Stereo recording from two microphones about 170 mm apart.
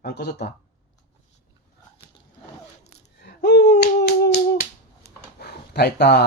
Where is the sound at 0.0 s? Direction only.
75° left (ahead or behind).